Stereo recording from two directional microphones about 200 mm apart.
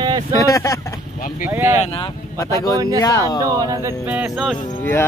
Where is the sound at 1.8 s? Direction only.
25° left (ahead or behind).